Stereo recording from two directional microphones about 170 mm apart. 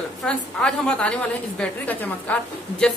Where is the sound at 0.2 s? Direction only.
5° left (ahead or behind).